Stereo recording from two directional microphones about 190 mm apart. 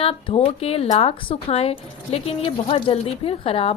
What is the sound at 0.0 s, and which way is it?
A woman's voice, 30° left (ahead or behind).